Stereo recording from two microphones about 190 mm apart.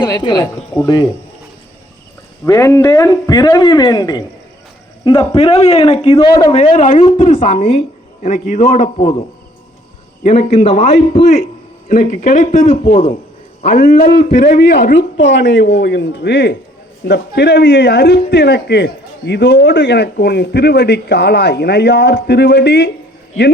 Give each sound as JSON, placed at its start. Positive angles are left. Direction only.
{"t": 0.0, "sound": "speech", "side_deg": 20}
{"t": 2.4, "sound": "a man's voice", "side_deg": 15}
{"t": 6.1, "sound": "speech", "side_deg": 20}
{"t": 6.5, "sound": "a man's voice", "side_deg": 35}
{"t": 7.3, "sound": "speech", "side_deg": 30}
{"t": 7.8, "sound": "a man's voice", "side_deg": 40}
{"t": 10.2, "sound": "a man's voice", "side_deg": 35}
{"t": 11.9, "sound": "a man's voice", "side_deg": 45}
{"t": 13.7, "sound": "speech", "side_deg": 50}
{"t": 14.6, "sound": "a man's voice", "side_deg": 65}